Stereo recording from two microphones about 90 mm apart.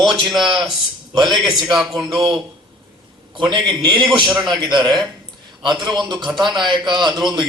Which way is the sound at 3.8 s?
65° right (ahead or behind).